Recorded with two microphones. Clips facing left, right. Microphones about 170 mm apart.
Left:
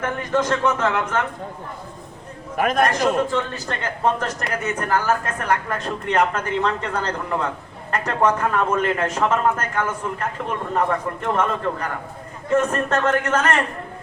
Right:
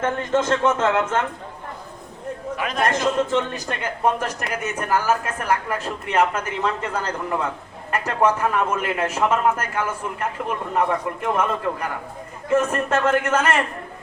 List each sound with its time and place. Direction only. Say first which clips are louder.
0.0 s a man's voice: right 1 dB; 25° right (ahead or behind)
2.6 s a man's voice: left 9 dB; 50° left (ahead or behind)
2.9 s speech: even; 20° right (ahead or behind)